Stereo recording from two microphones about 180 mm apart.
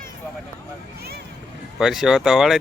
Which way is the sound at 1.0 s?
60° right (ahead or behind).